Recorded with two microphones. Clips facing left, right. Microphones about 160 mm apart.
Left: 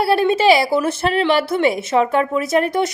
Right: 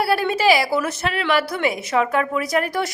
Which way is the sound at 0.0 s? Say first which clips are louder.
Left 4 dB; 25° left (ahead or behind).